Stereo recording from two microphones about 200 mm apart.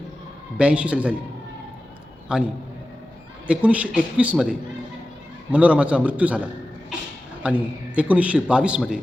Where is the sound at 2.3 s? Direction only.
5° right (ahead or behind).